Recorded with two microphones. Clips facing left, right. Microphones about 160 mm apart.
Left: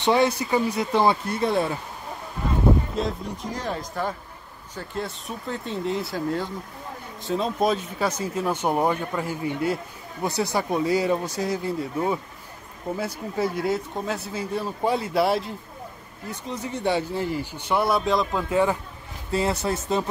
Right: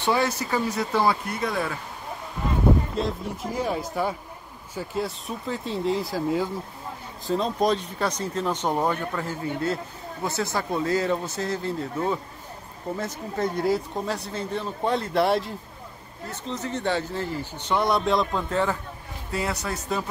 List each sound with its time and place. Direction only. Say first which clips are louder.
0.0 s speech: left 3 dB; 20° left (ahead or behind)
3.0 s speech: even; centre (ahead or behind)
16.3 s speech: even; 10° left (ahead or behind)
19.3 s speech: left 5 dB; 25° left (ahead or behind)